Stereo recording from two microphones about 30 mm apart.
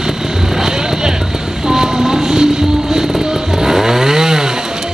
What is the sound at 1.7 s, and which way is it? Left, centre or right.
Music, centre.